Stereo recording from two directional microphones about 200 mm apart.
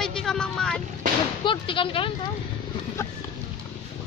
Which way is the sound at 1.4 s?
25° left (ahead or behind).